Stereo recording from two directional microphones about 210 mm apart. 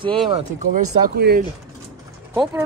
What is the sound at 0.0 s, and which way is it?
Speech, 25° right (ahead or behind).